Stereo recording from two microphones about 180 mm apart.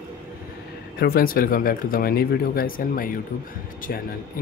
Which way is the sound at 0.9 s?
55° left (ahead or behind).